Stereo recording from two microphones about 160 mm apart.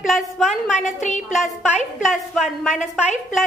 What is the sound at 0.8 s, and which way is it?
Speech, 50° left (ahead or behind).